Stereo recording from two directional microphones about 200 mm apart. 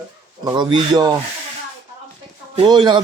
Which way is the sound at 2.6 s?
20° right (ahead or behind).